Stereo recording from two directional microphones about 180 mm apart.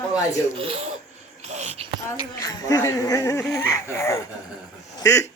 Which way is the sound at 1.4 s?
40° right (ahead or behind).